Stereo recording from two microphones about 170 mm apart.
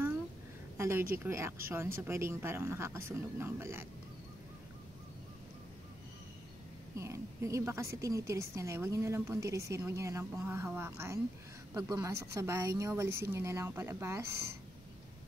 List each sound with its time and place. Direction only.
0.7 s a woman's voice: 15° right (ahead or behind)
7.0 s a woman's voice: 15° right (ahead or behind)